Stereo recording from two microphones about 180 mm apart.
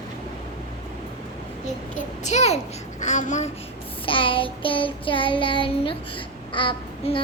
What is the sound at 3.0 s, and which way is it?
Speech, 45° left (ahead or behind).